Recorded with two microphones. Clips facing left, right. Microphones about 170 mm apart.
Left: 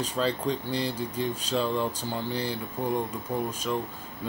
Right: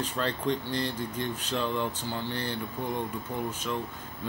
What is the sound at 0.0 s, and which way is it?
Speech, 10° left (ahead or behind).